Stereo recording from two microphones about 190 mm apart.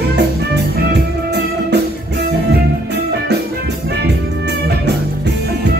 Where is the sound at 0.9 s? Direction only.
60° right (ahead or behind).